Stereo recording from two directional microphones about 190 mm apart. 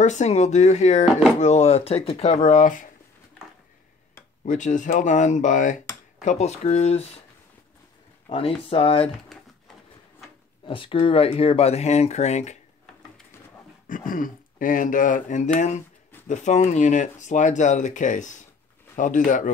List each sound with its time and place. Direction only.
0.0 s speech: 35° left (ahead or behind)
4.5 s speech: 40° left (ahead or behind)
8.3 s speech: 30° left (ahead or behind)
10.6 s speech: 25° left (ahead or behind)
13.8 s speech: 45° left (ahead or behind)